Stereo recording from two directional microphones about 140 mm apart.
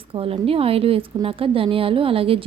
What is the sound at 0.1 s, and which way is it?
A woman's voice, 40° right (ahead or behind).